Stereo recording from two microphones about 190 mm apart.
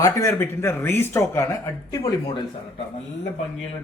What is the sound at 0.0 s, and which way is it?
Speech, 15° left (ahead or behind).